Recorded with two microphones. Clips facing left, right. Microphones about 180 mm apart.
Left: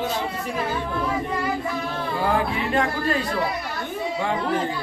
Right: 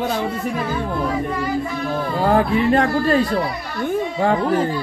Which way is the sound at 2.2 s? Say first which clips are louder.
Right 7 dB; 45° right (ahead or behind).